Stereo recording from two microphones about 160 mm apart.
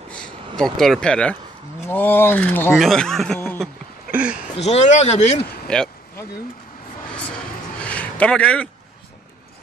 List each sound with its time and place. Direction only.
0.6 s speech: centre (ahead or behind)
2.8 s speech: centre (ahead or behind)
4.1 s a sound: 5° right (ahead or behind)
4.6 s speech: 45° left (ahead or behind)
5.7 s speech: 5° left (ahead or behind)
7.8 s a sound: 10° left (ahead or behind)